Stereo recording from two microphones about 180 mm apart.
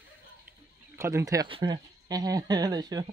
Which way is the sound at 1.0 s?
15° right (ahead or behind).